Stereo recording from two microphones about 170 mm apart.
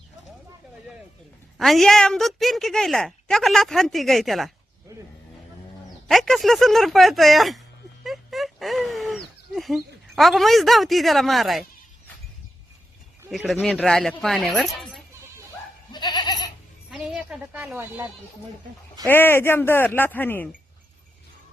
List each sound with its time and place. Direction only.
1.5 s a woman's voice: centre (ahead or behind)
6.1 s a woman's voice: centre (ahead or behind)
8.0 s a sound: centre (ahead or behind)
9.6 s a woman's voice: centre (ahead or behind)
13.3 s a woman's voice: centre (ahead or behind)
15.9 s goat: 25° left (ahead or behind)
16.9 s speech: 5° right (ahead or behind)
19.0 s speech: 10° left (ahead or behind)